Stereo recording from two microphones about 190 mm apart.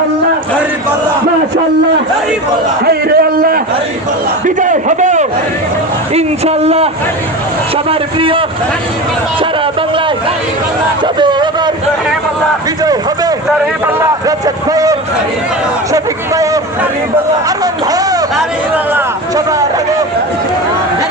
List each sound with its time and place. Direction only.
2.8 s a sound: 55° right (ahead or behind)
4.4 s a man's voice: 40° right (ahead or behind)
11.0 s speech: 25° right (ahead or behind)
12.8 s a man's voice: 20° right (ahead or behind)